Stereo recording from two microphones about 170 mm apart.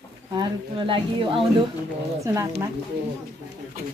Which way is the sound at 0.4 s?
30° right (ahead or behind).